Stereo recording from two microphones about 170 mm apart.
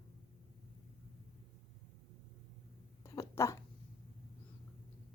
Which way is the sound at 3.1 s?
15° left (ahead or behind).